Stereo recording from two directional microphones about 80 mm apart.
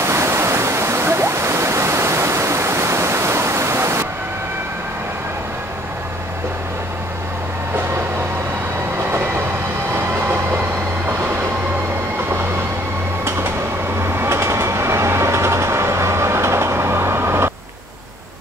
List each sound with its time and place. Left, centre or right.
0.0 s waterfall: right
9.9 s train: right
14.2 s train: right